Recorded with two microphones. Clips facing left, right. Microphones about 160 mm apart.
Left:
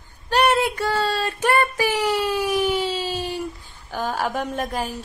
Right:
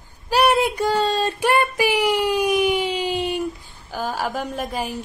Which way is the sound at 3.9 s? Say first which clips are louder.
Left 1 dB; 5° right (ahead or behind).